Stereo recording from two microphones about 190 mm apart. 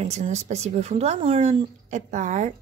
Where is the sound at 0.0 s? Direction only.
35° right (ahead or behind).